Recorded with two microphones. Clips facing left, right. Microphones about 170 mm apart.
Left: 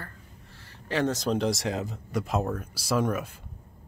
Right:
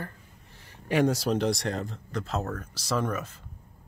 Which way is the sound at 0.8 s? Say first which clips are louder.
Right 2 dB; 15° right (ahead or behind).